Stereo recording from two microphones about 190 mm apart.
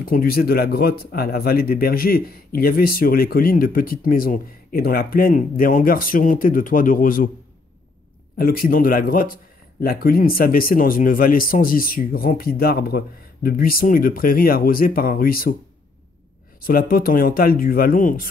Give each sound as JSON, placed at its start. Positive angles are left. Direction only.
{"t": 0.0, "sound": "speech", "side_deg": 50}
{"t": 8.4, "sound": "speech", "side_deg": 50}
{"t": 16.6, "sound": "speech", "side_deg": 50}